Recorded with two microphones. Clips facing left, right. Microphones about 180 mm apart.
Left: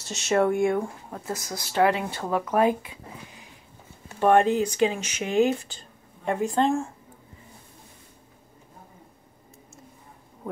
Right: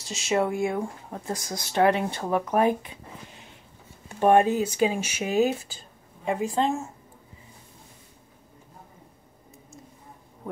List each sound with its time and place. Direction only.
0.0 s speech: centre (ahead or behind)
0.7 s speech: 20° right (ahead or behind)
4.2 s speech: 10° right (ahead or behind)